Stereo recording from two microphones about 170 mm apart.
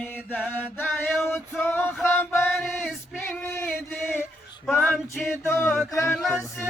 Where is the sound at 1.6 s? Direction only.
10° left (ahead or behind).